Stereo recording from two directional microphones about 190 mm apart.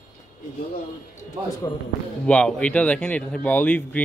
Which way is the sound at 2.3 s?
5° left (ahead or behind).